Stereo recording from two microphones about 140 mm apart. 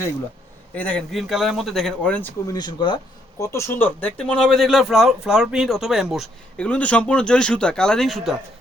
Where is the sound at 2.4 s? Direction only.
30° left (ahead or behind).